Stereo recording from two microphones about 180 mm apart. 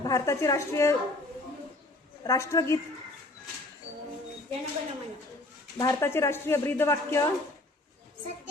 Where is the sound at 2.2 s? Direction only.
15° left (ahead or behind).